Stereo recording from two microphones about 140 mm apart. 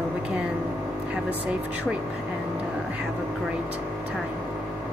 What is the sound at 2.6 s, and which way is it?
Vehicle, 10° right (ahead or behind).